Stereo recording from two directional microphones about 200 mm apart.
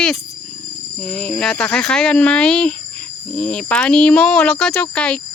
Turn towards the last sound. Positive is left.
turn(degrees=5)  # may be behind; listen again after turning